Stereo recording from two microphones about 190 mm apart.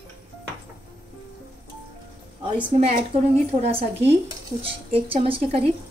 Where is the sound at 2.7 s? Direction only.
35° right (ahead or behind).